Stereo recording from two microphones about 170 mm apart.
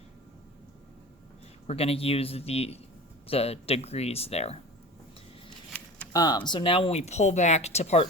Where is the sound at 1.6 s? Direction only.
35° left (ahead or behind).